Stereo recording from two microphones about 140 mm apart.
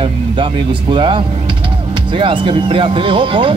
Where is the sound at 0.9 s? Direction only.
35° right (ahead or behind).